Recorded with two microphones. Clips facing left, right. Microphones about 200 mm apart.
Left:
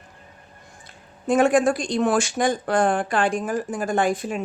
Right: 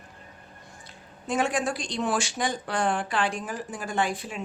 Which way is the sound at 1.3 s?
50° left (ahead or behind).